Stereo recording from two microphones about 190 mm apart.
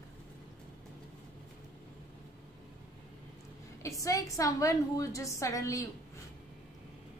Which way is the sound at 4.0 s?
15° left (ahead or behind).